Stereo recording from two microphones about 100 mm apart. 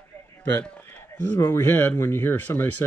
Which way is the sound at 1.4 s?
25° left (ahead or behind).